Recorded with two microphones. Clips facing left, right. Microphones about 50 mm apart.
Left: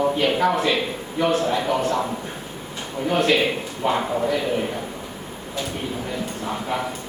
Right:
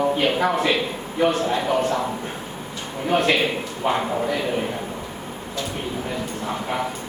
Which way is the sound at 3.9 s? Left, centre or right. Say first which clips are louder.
Left 1 dB; centre.